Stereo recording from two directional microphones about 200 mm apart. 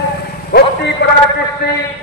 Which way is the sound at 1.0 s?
60° left (ahead or behind).